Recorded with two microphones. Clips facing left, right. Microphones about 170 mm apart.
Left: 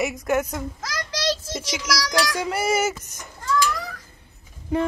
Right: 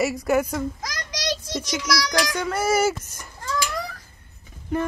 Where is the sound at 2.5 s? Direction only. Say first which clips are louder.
Right 3 dB; 5° left (ahead or behind).